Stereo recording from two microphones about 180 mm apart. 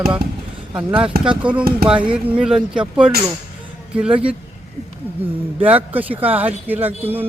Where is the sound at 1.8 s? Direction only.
55° right (ahead or behind).